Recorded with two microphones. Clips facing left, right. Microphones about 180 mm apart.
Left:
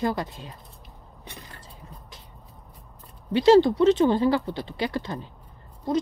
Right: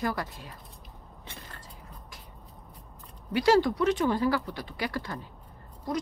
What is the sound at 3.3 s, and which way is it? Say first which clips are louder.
Speech: left 6 dB; 25° left (ahead or behind).